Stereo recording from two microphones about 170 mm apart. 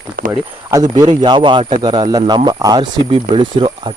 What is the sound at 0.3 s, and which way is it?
Speech, 20° right (ahead or behind).